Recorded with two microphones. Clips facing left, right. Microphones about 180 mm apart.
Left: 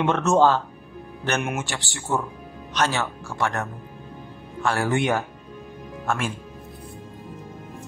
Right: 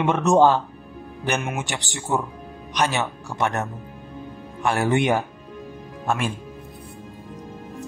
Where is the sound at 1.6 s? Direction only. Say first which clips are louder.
Right 2 dB; 20° right (ahead or behind).